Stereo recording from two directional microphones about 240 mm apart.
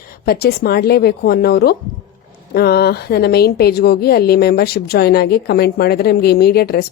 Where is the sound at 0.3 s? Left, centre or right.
Left.